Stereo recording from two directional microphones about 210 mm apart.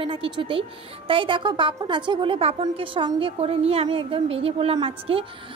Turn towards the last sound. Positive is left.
turn(degrees=-25)  # may be behind; listen again after turning